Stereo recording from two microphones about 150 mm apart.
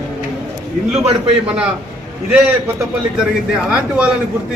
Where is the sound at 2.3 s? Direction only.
5° right (ahead or behind).